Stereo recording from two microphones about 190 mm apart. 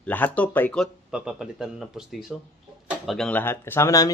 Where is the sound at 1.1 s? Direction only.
5° right (ahead or behind).